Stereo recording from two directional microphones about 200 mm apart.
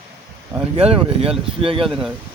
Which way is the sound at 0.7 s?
30° right (ahead or behind).